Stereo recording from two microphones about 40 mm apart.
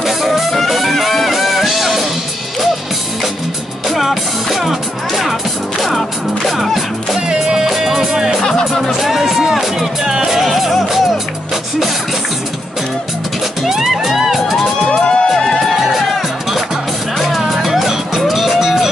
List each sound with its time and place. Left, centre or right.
0.0 s music: centre
3.9 s music: centre
7.4 s music: centre
8.4 s music: centre
8.9 s music: centre
10.4 s music: centre
13.6 s music: centre
14.9 s music: centre
15.7 s music: centre